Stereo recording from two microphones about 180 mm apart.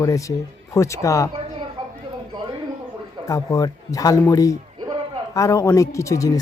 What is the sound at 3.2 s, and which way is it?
A man's voice, 20° left (ahead or behind).